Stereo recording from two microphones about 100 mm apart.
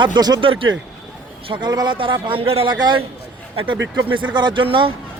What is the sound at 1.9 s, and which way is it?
Speech, 60° right (ahead or behind).